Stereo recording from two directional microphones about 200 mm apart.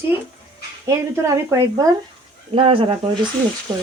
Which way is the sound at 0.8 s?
15° right (ahead or behind).